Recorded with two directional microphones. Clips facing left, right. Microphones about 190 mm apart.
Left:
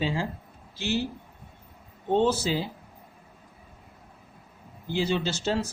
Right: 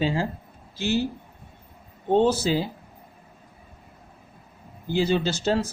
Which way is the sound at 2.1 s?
40° right (ahead or behind).